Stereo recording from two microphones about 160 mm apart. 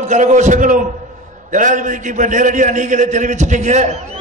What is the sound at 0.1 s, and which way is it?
A man's voice, 50° right (ahead or behind).